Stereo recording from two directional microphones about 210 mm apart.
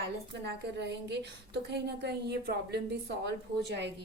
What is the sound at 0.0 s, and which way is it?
A woman's voice, 55° right (ahead or behind).